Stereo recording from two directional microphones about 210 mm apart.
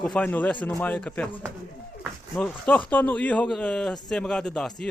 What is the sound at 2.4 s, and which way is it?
A man's voice, 5° left (ahead or behind).